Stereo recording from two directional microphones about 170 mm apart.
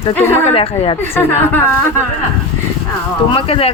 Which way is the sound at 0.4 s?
35° left (ahead or behind).